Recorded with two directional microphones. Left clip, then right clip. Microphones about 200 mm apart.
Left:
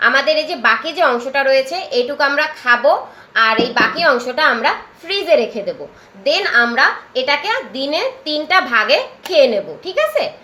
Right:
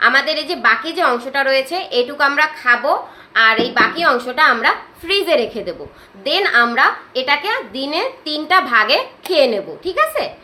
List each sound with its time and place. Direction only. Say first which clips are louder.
0.0 s a woman's voice: left 1 dB; 15° right (ahead or behind)